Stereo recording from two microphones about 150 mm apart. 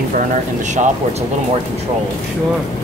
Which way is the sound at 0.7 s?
55° right (ahead or behind).